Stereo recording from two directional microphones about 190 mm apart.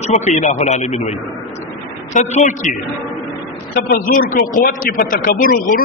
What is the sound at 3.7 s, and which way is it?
A man's voice, 50° left (ahead or behind).